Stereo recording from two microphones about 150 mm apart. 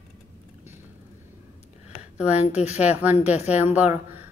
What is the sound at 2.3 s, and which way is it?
Speech, 50° left (ahead or behind).